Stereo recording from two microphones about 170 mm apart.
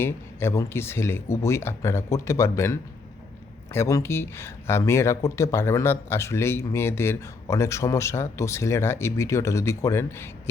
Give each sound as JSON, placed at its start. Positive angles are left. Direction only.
{"t": 0.0, "sound": "speech", "side_deg": 15}